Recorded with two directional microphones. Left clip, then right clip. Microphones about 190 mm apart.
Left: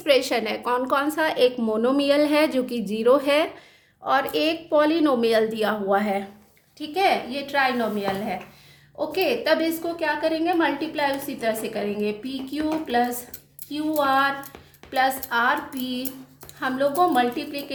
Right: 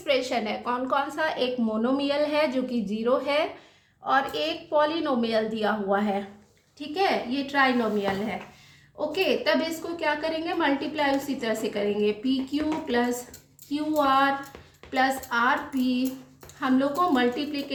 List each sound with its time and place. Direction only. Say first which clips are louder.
0.0 s a woman's voice: left 5 dB; 50° left (ahead or behind)
9.1 s a woman's voice: left 3 dB; 40° left (ahead or behind)